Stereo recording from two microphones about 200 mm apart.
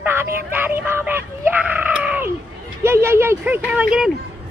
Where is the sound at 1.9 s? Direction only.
5° right (ahead or behind).